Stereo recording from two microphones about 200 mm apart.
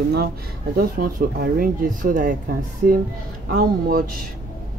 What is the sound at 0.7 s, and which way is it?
Speech, 45° right (ahead or behind).